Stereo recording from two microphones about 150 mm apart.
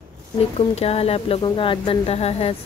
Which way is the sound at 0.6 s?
40° left (ahead or behind).